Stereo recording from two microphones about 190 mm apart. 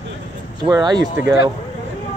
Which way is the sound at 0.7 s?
20° right (ahead or behind).